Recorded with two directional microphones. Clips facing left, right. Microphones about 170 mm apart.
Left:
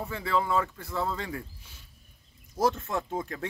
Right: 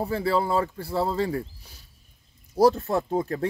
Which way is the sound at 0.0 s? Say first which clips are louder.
Right 5 dB; 35° right (ahead or behind).